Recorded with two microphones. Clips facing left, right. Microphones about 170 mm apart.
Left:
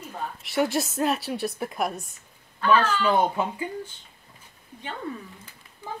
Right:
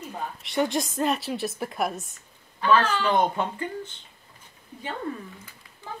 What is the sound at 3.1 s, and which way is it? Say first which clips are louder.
Speech: left 1 dB; 5° left (ahead or behind).